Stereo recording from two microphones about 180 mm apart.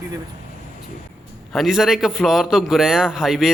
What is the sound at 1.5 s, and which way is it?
A man's voice, centre (ahead or behind).